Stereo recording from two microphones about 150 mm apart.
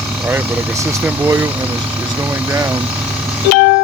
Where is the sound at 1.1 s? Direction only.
15° right (ahead or behind).